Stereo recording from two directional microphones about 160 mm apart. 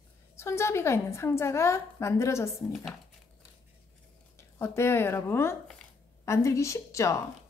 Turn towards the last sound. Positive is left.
turn(degrees=20)  # may be behind; listen again after turning